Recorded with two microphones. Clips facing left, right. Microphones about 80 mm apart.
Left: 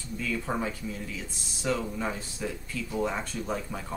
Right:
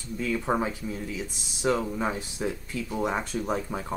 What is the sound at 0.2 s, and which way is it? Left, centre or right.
Speech, right.